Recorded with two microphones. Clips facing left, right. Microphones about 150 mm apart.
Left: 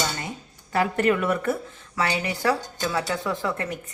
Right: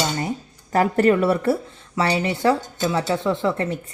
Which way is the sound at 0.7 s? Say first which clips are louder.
Right 5 dB; 40° right (ahead or behind).